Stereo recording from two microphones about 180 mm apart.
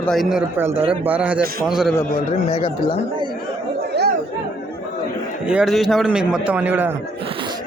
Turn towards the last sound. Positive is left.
turn(degrees=-10)  # may be behind; listen again after turning